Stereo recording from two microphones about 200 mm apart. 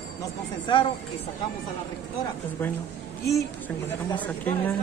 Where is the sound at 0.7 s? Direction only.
25° left (ahead or behind).